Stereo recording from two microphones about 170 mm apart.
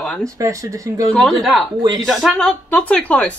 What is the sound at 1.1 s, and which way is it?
Speech, centre (ahead or behind).